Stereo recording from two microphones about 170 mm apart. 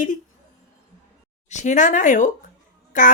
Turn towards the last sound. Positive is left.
turn(degrees=50)  # may be behind; listen again after turning